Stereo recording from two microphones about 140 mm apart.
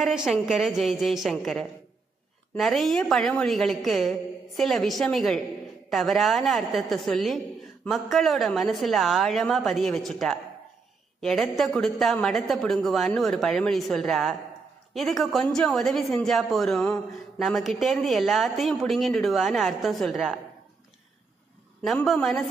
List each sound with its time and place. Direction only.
0.0 s a woman's voice: centre (ahead or behind)
21.8 s a woman's voice: centre (ahead or behind)